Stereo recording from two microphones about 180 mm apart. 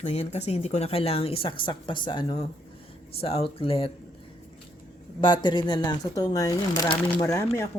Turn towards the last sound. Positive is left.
turn(degrees=20)  # may be behind; listen again after turning